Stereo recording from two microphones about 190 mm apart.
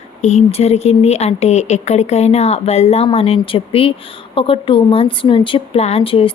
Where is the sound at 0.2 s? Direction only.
35° left (ahead or behind).